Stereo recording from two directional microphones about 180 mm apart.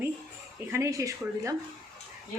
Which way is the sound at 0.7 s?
15° right (ahead or behind).